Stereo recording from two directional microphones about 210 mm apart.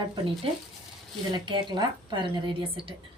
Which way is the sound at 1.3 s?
20° right (ahead or behind).